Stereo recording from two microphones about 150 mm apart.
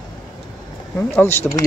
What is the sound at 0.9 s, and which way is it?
Speech, 10° left (ahead or behind).